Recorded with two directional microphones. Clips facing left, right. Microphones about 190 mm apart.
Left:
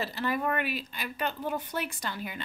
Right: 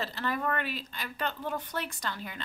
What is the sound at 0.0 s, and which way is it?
Speech, 10° left (ahead or behind).